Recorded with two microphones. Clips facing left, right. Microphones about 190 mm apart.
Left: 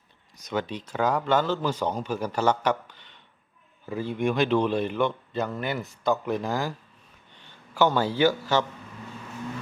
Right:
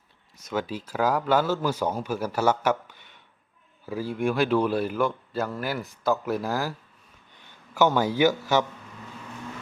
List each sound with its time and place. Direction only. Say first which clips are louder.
0.4 s speech: even; 5° right (ahead or behind)
7.3 s a sound: right 1 dB; 10° right (ahead or behind)
8.5 s speech: right 1 dB; 10° right (ahead or behind)